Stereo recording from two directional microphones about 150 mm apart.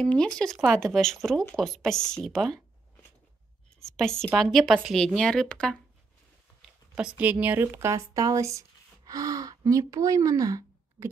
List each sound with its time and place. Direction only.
0.0 s speech: 5° left (ahead or behind)
3.8 s a woman's voice: 5° left (ahead or behind)
7.0 s speech: 5° right (ahead or behind)